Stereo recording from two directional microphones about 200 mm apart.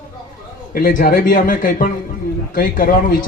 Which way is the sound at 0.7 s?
45° left (ahead or behind).